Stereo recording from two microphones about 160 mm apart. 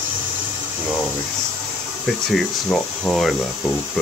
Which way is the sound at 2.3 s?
Centre (ahead or behind).